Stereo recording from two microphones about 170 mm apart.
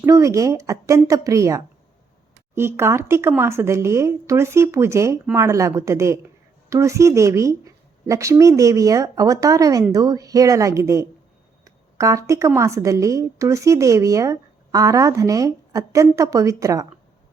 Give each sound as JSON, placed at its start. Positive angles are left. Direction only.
{"t": 0.0, "sound": "a woman's voice", "side_deg": -20}